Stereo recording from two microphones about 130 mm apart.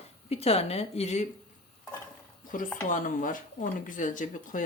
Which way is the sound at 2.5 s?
90° left.